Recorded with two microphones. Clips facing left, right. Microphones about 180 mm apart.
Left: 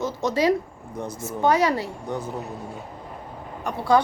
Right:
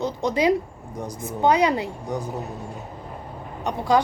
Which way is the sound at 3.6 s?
15° right (ahead or behind).